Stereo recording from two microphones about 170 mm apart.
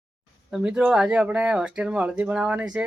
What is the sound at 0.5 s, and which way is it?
Speech, 5° right (ahead or behind).